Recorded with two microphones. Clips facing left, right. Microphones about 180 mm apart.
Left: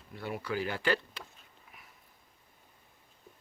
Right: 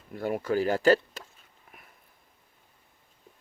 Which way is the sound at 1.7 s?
50° right (ahead or behind).